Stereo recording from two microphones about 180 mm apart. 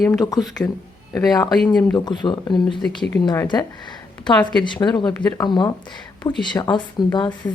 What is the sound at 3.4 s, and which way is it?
Speech, 25° left (ahead or behind).